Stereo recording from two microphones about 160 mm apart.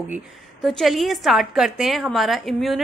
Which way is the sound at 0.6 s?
Centre (ahead or behind).